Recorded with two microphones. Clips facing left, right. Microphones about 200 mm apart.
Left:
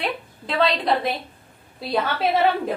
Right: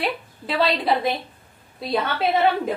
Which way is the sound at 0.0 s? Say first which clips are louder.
Right 1 dB; 5° right (ahead or behind).